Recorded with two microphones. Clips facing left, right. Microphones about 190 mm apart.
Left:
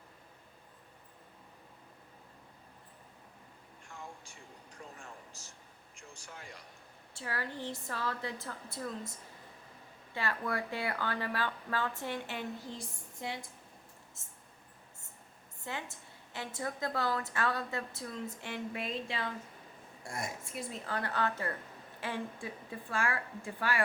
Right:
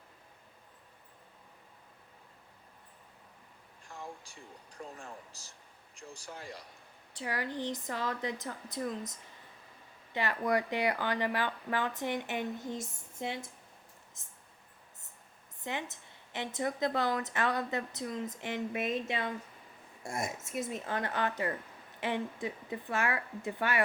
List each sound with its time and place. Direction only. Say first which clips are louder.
5.3 s a man's voice: left 1 dB; 35° right (ahead or behind)
7.2 s speech: right 4 dB; 15° right (ahead or behind)
10.2 s speech: right 5 dB; 20° right (ahead or behind)
15.6 s a woman's voice: right 3 dB; 20° right (ahead or behind)